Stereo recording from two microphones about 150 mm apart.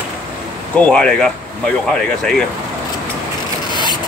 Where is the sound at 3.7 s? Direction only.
30° left (ahead or behind).